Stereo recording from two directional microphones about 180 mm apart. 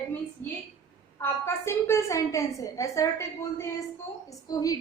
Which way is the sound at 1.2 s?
15° left (ahead or behind).